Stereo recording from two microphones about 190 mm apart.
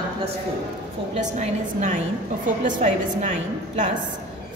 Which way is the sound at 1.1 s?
40° right (ahead or behind).